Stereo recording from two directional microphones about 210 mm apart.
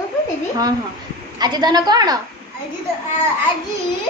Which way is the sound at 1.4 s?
20° right (ahead or behind).